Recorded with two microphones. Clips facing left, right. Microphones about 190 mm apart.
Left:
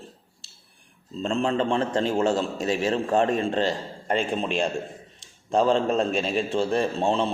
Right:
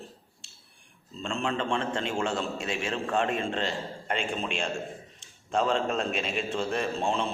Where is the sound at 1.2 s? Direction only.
35° left (ahead or behind).